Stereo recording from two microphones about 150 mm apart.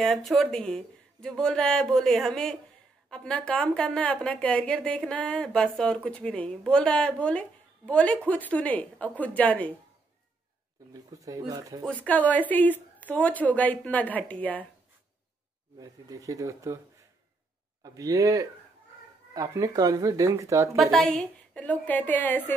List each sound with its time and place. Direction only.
0.0 s a woman's voice: centre (ahead or behind)
10.9 s speech: 25° right (ahead or behind)
11.8 s a woman's voice: 10° left (ahead or behind)
15.8 s speech: 25° right (ahead or behind)
17.8 s speech: 25° right (ahead or behind)
20.7 s a woman's voice: centre (ahead or behind)